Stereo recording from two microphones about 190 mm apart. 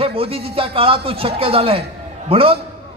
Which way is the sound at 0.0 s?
30° right (ahead or behind).